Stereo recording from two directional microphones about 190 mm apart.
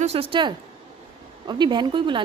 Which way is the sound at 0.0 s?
30° right (ahead or behind).